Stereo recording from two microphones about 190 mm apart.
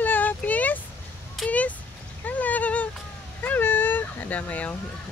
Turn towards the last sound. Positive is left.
turn(degrees=10)  # may be behind; listen again after turning